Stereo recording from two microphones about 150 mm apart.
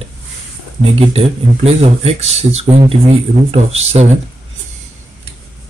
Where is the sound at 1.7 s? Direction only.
45° right (ahead or behind).